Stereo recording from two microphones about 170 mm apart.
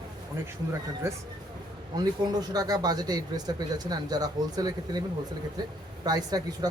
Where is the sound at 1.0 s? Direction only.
15° right (ahead or behind).